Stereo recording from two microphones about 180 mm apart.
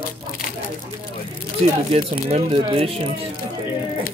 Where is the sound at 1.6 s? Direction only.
35° right (ahead or behind).